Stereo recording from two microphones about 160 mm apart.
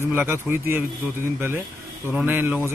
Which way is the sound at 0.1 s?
15° right (ahead or behind).